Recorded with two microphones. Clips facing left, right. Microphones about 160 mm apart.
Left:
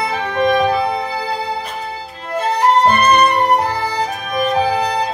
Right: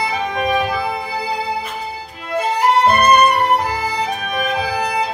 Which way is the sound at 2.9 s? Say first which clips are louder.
Even; 10° right (ahead or behind).